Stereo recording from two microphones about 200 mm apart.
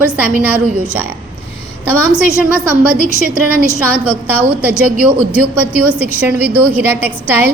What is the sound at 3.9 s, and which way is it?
Speech, 10° right (ahead or behind).